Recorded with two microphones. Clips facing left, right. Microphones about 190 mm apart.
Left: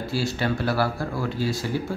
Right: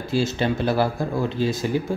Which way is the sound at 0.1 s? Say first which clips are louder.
Right 4 dB; 20° right (ahead or behind).